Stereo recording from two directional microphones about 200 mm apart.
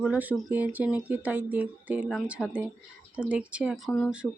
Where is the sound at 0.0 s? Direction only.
5° right (ahead or behind).